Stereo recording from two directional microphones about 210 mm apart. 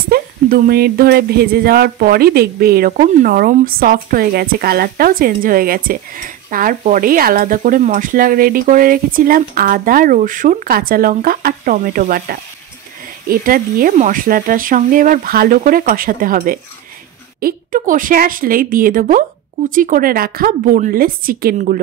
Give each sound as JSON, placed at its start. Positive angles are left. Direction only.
{"t": 0.1, "sound": "speech", "side_deg": -45}